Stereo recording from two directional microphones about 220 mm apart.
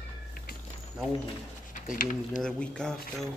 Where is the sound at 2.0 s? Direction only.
35° left (ahead or behind).